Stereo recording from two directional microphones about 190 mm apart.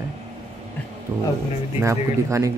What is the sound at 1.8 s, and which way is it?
Speech, 15° right (ahead or behind).